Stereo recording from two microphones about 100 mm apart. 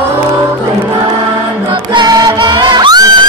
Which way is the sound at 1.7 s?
50° right (ahead or behind).